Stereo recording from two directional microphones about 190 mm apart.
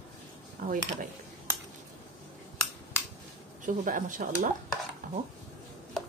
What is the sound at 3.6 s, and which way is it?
Speech, 45° right (ahead or behind).